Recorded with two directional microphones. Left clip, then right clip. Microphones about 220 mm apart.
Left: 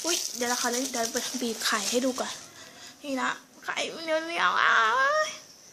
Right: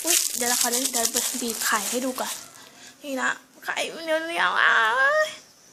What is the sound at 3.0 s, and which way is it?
A child's voice, 10° right (ahead or behind).